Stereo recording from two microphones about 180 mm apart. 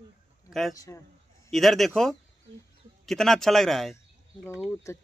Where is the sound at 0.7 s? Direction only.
15° left (ahead or behind).